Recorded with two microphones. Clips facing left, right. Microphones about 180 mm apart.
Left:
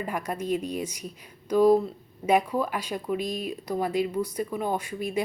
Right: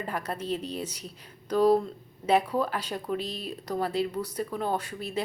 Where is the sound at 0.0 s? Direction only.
10° left (ahead or behind).